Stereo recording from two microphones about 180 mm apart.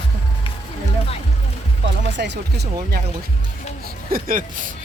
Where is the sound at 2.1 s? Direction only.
75° right (ahead or behind).